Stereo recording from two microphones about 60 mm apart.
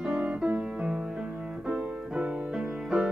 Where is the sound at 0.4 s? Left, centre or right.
Right.